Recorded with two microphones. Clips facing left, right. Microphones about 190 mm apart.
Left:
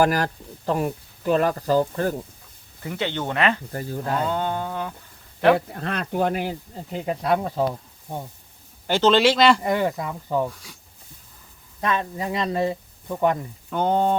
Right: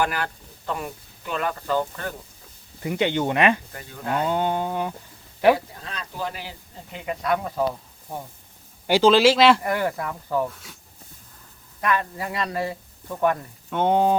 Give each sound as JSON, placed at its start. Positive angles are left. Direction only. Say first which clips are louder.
{"t": 0.0, "sound": "speech", "louder": "left 5 dB", "side_deg": 40}
{"t": 2.8, "sound": "speech", "louder": "right 4 dB", "side_deg": -15}
{"t": 3.7, "sound": "speech", "louder": "left 2 dB", "side_deg": 35}
{"t": 4.3, "sound": "a sound", "louder": "right 2 dB", "side_deg": -15}
{"t": 5.5, "sound": "speech", "louder": "left 8 dB", "side_deg": 60}
{"t": 6.9, "sound": "speech", "louder": "left 3 dB", "side_deg": 35}
{"t": 8.9, "sound": "speech", "louder": "right 2 dB", "side_deg": -10}
{"t": 9.6, "sound": "speech", "louder": "left 2 dB", "side_deg": 20}
{"t": 10.5, "sound": "speech", "louder": "even", "side_deg": 0}
{"t": 11.8, "sound": "speech", "louder": "even", "side_deg": 25}
{"t": 13.7, "sound": "speech", "louder": "right 1 dB", "side_deg": 0}